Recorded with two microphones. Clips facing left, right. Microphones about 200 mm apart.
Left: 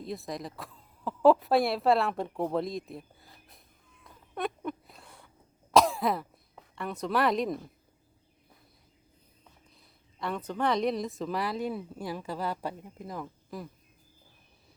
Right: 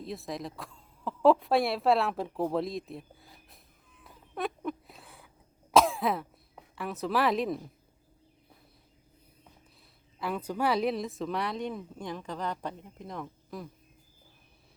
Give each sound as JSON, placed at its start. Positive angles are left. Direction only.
{"t": 0.0, "sound": "speech", "side_deg": 0}
{"t": 4.0, "sound": "a sound", "side_deg": 0}
{"t": 5.7, "sound": "throat clearing", "side_deg": 0}
{"t": 10.2, "sound": "speech", "side_deg": -5}